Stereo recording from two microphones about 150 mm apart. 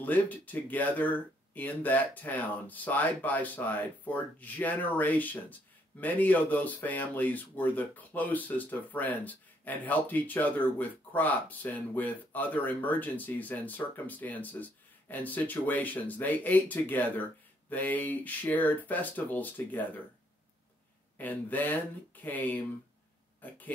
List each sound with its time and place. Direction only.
0.0 s speech: 10° left (ahead or behind)
21.2 s speech: 10° left (ahead or behind)